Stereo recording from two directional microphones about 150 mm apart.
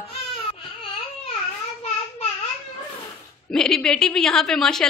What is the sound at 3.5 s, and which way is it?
A woman's voice, 5° left (ahead or behind).